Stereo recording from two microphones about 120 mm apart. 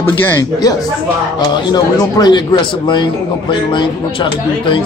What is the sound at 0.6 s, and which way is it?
A man's voice, 30° left (ahead or behind).